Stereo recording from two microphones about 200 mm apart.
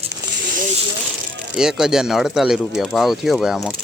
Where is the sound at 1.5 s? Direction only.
5° right (ahead or behind).